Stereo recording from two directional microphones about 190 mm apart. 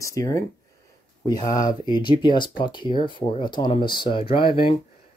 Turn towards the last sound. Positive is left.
turn(degrees=25)  # may be behind; listen again after turning